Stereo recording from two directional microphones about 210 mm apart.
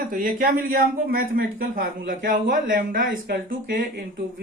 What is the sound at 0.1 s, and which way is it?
Speech, 40° right (ahead or behind).